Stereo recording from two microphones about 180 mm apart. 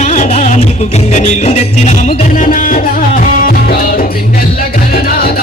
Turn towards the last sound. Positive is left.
turn(degrees=50)  # may be behind; listen again after turning